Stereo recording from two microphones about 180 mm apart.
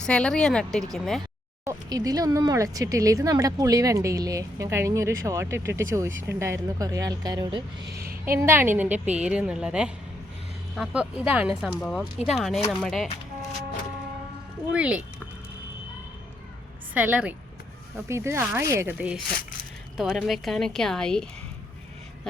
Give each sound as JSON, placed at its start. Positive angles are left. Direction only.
{"t": 0.0, "sound": "speech", "side_deg": 5}
{"t": 1.6, "sound": "speech", "side_deg": -20}
{"t": 11.8, "sound": "speech", "side_deg": 5}
{"t": 14.7, "sound": "speech", "side_deg": -5}
{"t": 16.9, "sound": "speech", "side_deg": -10}